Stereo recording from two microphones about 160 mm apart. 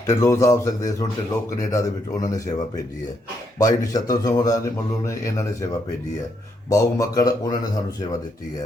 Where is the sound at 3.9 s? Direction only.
25° left (ahead or behind).